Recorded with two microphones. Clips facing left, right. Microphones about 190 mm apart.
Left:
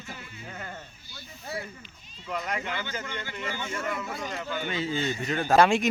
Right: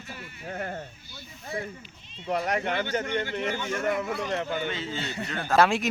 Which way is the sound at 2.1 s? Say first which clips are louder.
Right 5 dB; 30° right (ahead or behind).